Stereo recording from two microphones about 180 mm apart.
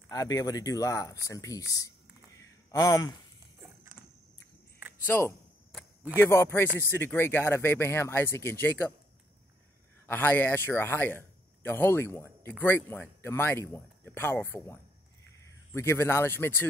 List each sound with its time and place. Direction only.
0.1 s speech: 20° left (ahead or behind)
2.3 s a sound: 20° left (ahead or behind)
5.0 s speech: 10° left (ahead or behind)
5.7 s speech: centre (ahead or behind)
10.0 s a man's voice: 10° left (ahead or behind)